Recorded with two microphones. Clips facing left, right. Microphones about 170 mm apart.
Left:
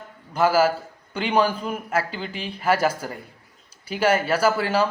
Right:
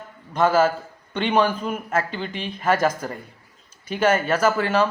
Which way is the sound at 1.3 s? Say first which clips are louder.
Right 1 dB; 10° left (ahead or behind).